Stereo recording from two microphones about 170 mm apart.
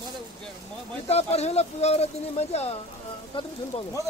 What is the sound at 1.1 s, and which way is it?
Speech, 40° left (ahead or behind).